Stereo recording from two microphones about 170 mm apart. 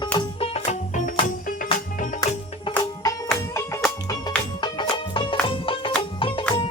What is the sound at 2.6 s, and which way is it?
Music, 20° left (ahead or behind).